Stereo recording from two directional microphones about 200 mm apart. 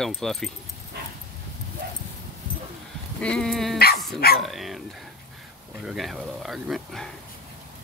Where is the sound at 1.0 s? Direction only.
55° right (ahead or behind).